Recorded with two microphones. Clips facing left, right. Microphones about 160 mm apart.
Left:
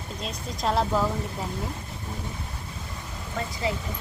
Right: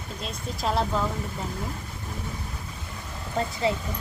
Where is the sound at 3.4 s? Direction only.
30° right (ahead or behind).